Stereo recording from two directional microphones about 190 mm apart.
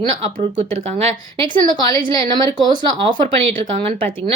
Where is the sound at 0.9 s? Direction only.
25° right (ahead or behind).